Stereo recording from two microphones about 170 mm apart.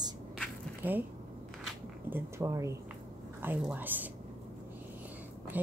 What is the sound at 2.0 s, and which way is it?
A woman's voice, 15° right (ahead or behind).